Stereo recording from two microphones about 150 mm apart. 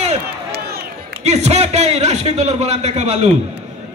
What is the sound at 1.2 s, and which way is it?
A man's voice, 45° right (ahead or behind).